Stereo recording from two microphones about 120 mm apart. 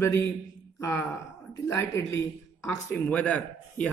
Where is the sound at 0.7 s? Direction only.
20° left (ahead or behind).